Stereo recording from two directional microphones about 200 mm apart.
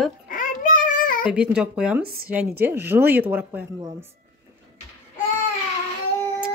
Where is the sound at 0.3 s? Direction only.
40° left (ahead or behind).